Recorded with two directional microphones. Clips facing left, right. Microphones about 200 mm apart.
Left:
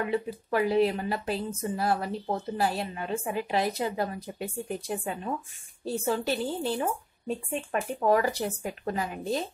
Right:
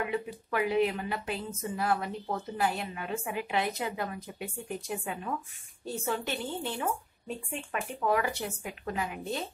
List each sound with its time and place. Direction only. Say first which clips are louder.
0.0 s a woman's voice: left 4 dB; 35° left (ahead or behind)